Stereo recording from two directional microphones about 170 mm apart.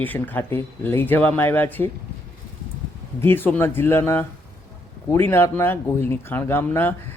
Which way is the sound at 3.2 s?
10° left (ahead or behind).